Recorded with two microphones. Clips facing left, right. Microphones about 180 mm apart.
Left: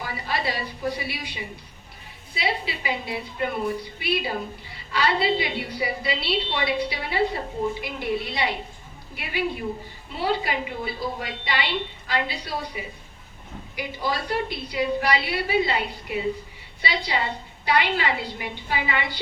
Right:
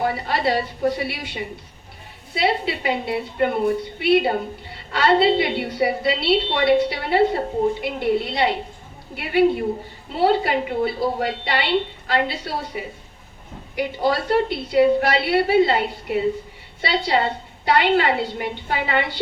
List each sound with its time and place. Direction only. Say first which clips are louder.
0.0 s a woman's voice: right 7 dB; 60° right (ahead or behind)
14.0 s a woman's voice: right 7 dB; 65° right (ahead or behind)